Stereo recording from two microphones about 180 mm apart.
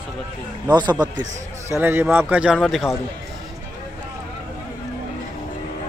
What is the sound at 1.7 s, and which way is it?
A man's voice, 10° right (ahead or behind).